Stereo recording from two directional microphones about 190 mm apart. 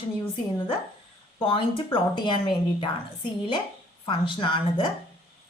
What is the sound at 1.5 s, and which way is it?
Speech, 25° left (ahead or behind).